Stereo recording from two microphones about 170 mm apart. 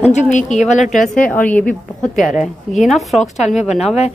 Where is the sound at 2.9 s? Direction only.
Centre (ahead or behind).